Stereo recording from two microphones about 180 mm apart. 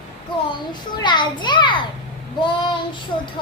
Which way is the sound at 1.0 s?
25° left (ahead or behind).